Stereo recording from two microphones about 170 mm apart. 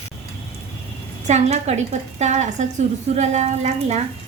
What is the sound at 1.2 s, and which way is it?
A woman's voice, 40° right (ahead or behind).